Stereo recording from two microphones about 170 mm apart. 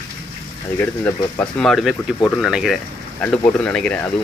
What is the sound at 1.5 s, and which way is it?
Speech, centre (ahead or behind).